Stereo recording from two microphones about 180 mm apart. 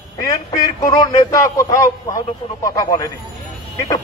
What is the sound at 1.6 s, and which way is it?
A man's voice, 20° left (ahead or behind).